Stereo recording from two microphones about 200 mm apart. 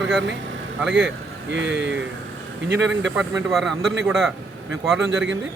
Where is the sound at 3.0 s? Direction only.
5° right (ahead or behind).